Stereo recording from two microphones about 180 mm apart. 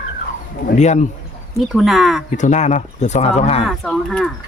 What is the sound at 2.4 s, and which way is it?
Speech, 40° left (ahead or behind).